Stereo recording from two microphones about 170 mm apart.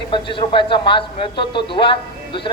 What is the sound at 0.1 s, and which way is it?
A man's voice, 30° left (ahead or behind).